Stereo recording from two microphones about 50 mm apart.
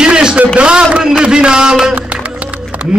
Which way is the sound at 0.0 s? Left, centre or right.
Centre.